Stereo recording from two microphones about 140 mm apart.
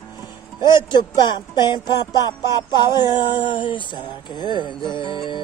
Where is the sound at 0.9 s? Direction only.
30° left (ahead or behind).